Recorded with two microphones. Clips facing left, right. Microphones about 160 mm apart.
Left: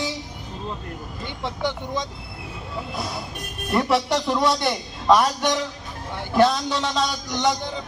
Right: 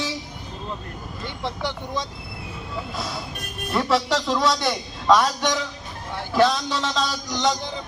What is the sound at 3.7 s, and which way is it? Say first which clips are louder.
Speech: left 1 dB; 15° left (ahead or behind).